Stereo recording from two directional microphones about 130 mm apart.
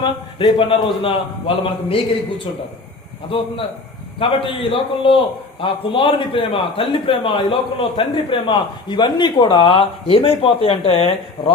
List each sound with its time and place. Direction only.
0.0 s a man's voice: 40° left (ahead or behind)
3.2 s a man's voice: 45° left (ahead or behind)